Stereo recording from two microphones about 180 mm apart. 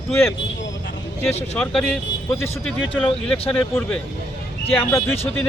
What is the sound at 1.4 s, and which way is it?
Speech, 10° left (ahead or behind).